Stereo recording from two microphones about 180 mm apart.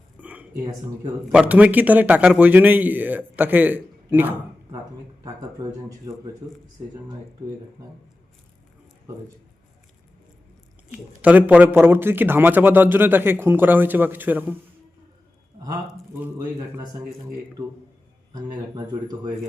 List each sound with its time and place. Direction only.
0.2 s a sound: 10° right (ahead or behind)
0.5 s speech: 20° right (ahead or behind)
1.3 s a man's voice: 5° right (ahead or behind)
10.9 s a man's voice: 10° right (ahead or behind)
18.4 s speech: 25° right (ahead or behind)